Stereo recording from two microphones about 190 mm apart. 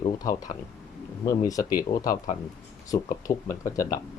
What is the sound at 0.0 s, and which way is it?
Speech, 20° left (ahead or behind).